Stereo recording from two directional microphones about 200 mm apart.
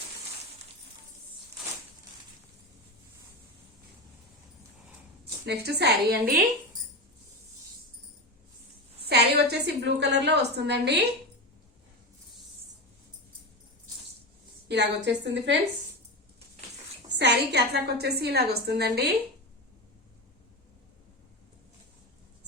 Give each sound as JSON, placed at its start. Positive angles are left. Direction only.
{"t": 5.5, "sound": "a woman's voice", "side_deg": -55}
{"t": 9.0, "sound": "a sound", "side_deg": -55}
{"t": 14.7, "sound": "a woman's voice", "side_deg": -55}
{"t": 17.2, "sound": "a woman's voice", "side_deg": -55}